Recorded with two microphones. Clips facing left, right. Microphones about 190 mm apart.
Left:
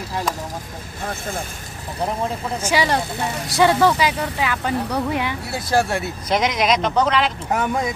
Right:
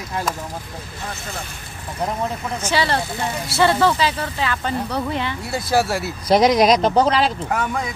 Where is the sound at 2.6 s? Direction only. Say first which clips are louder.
Left 1 dB; 10° left (ahead or behind).